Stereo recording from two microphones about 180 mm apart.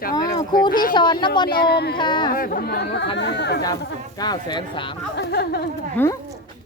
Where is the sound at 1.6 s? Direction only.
60° left (ahead or behind).